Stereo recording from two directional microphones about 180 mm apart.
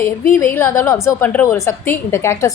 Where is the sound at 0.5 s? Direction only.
15° left (ahead or behind).